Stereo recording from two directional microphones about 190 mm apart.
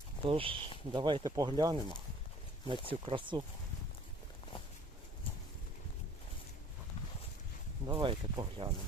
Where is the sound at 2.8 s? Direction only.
25° right (ahead or behind).